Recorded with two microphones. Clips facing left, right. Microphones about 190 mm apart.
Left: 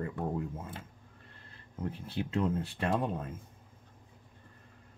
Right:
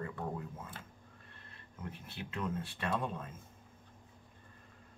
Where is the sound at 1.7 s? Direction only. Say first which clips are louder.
Left 9 dB; 35° left (ahead or behind).